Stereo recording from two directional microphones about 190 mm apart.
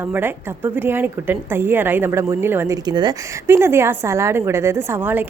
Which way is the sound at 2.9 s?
20° right (ahead or behind).